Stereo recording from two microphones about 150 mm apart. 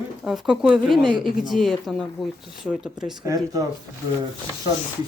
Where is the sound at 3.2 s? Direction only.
20° right (ahead or behind).